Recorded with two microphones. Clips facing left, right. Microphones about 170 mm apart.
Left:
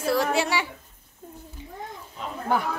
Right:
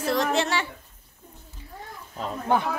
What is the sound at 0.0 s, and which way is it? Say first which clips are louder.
Speech: left 1 dB; 10° left (ahead or behind).